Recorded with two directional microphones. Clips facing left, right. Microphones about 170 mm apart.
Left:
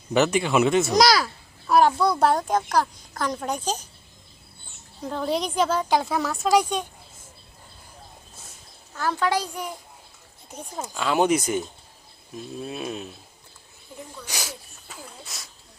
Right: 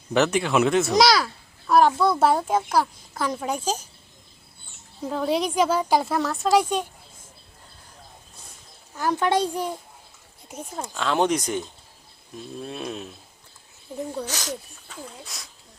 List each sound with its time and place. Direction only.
0.1 s a child's voice: centre (ahead or behind)
5.0 s a child's voice: 5° right (ahead or behind)
9.0 s a child's voice: 20° right (ahead or behind)
10.8 s a child's voice: 5° left (ahead or behind)
13.9 s speech: 30° right (ahead or behind)
14.3 s speech: 10° left (ahead or behind)